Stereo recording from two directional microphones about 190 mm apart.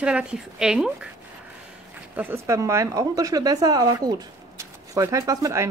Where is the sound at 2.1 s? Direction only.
10° right (ahead or behind).